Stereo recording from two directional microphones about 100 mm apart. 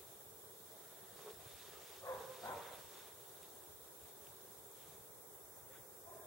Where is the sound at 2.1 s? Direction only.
35° left (ahead or behind).